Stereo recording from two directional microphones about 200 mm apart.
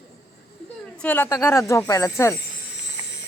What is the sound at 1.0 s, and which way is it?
Speech, 10° left (ahead or behind).